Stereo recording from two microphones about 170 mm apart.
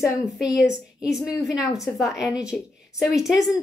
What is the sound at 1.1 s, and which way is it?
A woman's voice, 5° right (ahead or behind).